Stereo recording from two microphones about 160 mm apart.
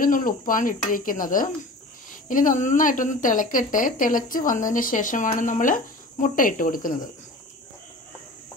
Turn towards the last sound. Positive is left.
turn(degrees=55)  # may be behind; listen again after turning